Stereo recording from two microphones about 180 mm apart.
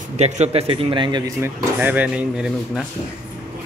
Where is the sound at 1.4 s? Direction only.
10° right (ahead or behind).